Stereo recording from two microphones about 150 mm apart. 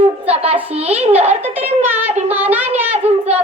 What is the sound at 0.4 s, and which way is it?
Speech, 10° right (ahead or behind).